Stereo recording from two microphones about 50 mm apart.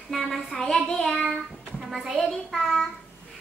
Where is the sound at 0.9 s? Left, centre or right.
Centre.